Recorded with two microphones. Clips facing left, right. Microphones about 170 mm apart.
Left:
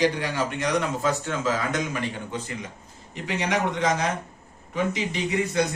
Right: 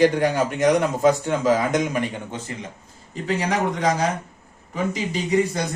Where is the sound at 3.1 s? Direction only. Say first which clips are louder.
Right 3 dB; 35° right (ahead or behind).